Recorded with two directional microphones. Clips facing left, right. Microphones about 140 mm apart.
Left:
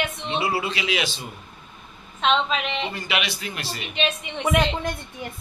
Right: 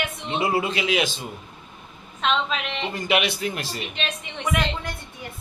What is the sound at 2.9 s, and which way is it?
Speech, 45° right (ahead or behind).